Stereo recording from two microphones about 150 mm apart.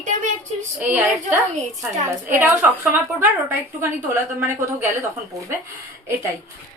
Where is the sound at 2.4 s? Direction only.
15° right (ahead or behind).